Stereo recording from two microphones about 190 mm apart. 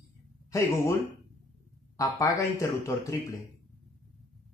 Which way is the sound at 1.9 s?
20° left (ahead or behind).